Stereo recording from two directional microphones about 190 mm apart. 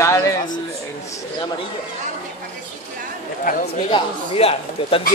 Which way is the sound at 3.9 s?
30° left (ahead or behind).